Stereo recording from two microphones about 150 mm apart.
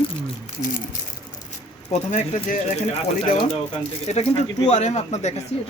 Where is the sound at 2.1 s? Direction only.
55° left (ahead or behind).